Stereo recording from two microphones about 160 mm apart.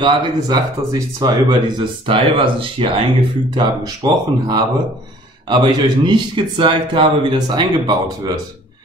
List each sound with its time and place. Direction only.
0.0 s speech: 25° right (ahead or behind)